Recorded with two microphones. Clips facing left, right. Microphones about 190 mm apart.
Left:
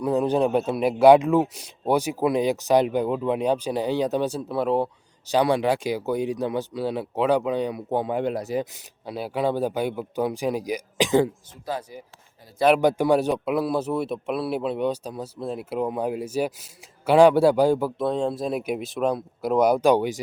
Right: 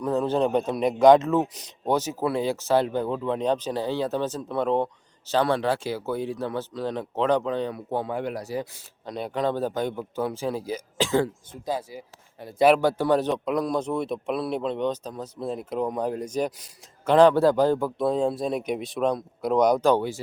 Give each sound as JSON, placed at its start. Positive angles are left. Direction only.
{"t": 0.0, "sound": "a man's voice", "side_deg": 15}
{"t": 9.0, "sound": "a man's voice", "side_deg": 5}
{"t": 11.6, "sound": "speech", "side_deg": -10}
{"t": 11.9, "sound": "speech", "side_deg": -65}
{"t": 12.8, "sound": "a man's voice", "side_deg": 15}